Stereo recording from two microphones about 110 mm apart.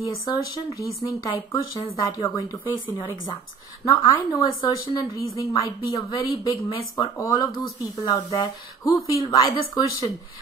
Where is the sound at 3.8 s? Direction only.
30° left (ahead or behind).